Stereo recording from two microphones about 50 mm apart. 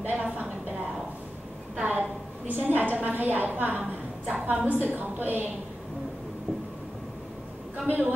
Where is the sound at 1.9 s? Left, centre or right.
Right.